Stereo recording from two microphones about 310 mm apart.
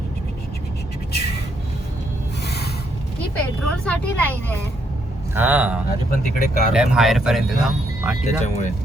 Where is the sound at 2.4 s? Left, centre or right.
Left.